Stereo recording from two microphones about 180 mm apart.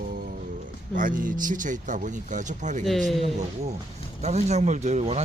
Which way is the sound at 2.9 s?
Centre (ahead or behind).